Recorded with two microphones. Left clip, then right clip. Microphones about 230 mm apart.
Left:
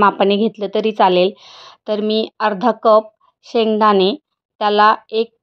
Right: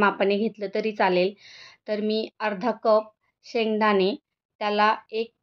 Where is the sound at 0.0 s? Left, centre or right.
Left.